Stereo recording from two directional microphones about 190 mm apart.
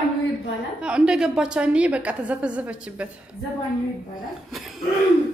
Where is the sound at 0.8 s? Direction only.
5° right (ahead or behind).